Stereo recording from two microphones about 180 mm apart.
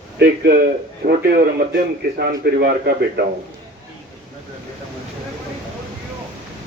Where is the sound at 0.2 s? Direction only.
65° right (ahead or behind).